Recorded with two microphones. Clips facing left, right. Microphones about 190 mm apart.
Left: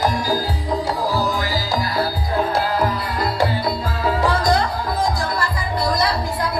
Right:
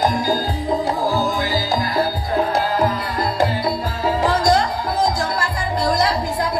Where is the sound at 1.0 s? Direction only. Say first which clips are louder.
Right 1 dB; 50° right (ahead or behind).